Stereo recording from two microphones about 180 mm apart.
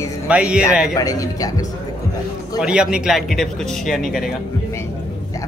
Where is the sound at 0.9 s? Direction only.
20° left (ahead or behind).